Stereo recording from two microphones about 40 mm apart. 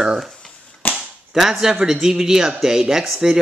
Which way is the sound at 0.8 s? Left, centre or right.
Left.